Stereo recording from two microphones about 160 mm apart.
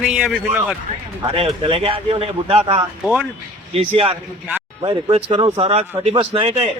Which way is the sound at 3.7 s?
40° right (ahead or behind).